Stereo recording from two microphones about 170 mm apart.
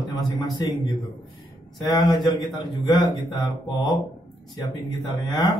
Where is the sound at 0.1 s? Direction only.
25° left (ahead or behind).